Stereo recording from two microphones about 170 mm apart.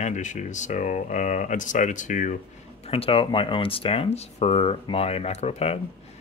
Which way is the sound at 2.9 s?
35° left (ahead or behind).